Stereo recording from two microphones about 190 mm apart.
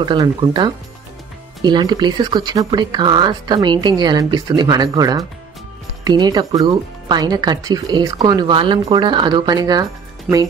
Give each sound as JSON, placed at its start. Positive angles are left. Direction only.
{"t": 0.0, "sound": "speech", "side_deg": -25}